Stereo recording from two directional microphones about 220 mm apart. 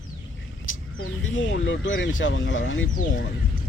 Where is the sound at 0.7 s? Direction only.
65° left (ahead or behind).